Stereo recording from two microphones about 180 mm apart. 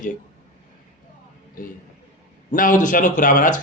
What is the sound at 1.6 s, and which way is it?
Speech, 50° left (ahead or behind).